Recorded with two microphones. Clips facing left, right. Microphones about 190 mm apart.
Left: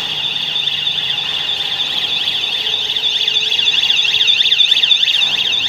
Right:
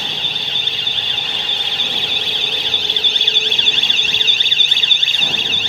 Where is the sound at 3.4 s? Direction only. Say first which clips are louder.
Right 4 dB; 55° right (ahead or behind).